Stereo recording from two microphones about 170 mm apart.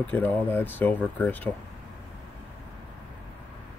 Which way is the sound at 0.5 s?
10° left (ahead or behind).